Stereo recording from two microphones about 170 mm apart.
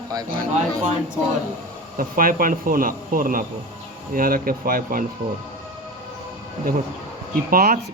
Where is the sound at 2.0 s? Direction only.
55° right (ahead or behind).